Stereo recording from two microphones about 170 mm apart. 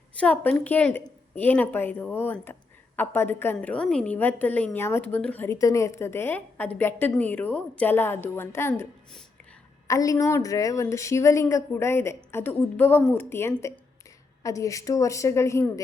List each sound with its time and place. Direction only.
0.2 s a woman's voice: 10° left (ahead or behind)